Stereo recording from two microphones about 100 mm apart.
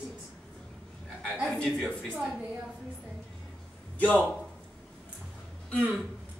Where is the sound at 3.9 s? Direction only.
15° left (ahead or behind).